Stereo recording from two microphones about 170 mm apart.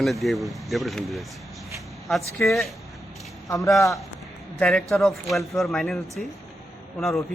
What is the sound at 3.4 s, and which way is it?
Speech, 20° left (ahead or behind).